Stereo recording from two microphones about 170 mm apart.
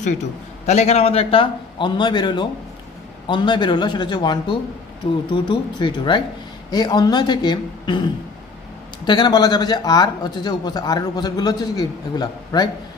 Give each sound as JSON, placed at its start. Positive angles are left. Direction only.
{"t": 0.7, "sound": "a man's voice", "side_deg": 40}